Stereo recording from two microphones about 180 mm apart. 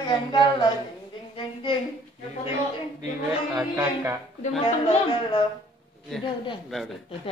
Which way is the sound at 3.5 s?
15° right (ahead or behind).